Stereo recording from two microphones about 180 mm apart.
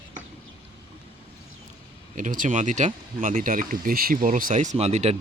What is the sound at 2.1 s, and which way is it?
Speech, 45° right (ahead or behind).